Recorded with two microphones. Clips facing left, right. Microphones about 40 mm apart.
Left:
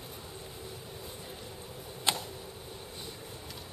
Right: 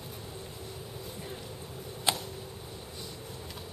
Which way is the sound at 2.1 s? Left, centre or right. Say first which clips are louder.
Right 1 dB; centre.